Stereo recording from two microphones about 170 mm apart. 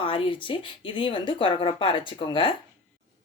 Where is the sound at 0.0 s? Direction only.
30° left (ahead or behind).